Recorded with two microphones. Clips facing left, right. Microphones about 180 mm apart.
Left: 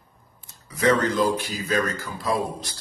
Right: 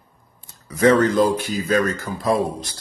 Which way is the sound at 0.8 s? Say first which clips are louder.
Right 5 dB; 45° right (ahead or behind).